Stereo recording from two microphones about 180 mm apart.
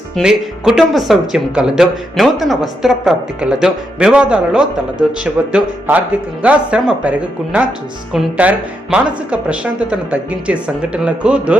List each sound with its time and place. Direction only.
0.2 s speech: 5° right (ahead or behind)